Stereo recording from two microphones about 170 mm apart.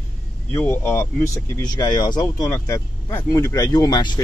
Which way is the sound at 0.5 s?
15° left (ahead or behind).